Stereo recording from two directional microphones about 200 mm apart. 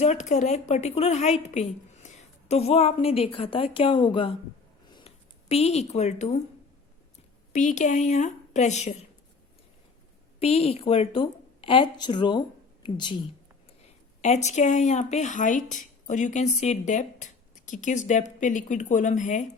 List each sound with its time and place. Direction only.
0.0 s a woman's voice: 35° left (ahead or behind)
4.9 s a sound: 25° left (ahead or behind)
7.5 s speech: 35° left (ahead or behind)
10.4 s a woman's voice: 30° left (ahead or behind)
14.2 s speech: 35° left (ahead or behind)